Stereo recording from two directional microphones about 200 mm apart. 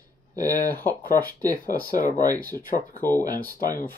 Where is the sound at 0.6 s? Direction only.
10° left (ahead or behind).